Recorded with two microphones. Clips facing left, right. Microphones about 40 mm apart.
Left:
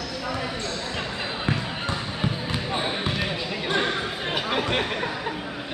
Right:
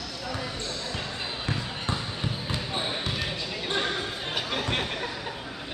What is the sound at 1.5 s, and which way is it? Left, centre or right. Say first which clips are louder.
Basketball bounce: left 3 dB; left.